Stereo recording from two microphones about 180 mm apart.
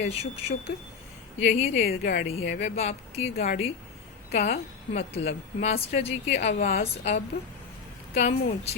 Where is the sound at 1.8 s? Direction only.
50° left (ahead or behind).